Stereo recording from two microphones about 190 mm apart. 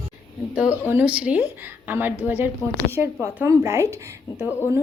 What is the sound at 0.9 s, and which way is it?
A woman's voice, 5° right (ahead or behind).